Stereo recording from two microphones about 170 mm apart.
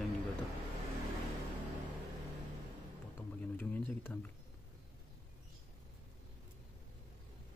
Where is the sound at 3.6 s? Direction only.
10° left (ahead or behind).